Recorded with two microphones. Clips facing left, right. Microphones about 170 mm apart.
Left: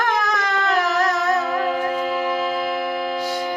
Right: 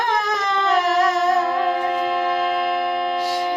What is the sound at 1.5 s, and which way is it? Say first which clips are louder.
Music: right 1 dB; 5° left (ahead or behind).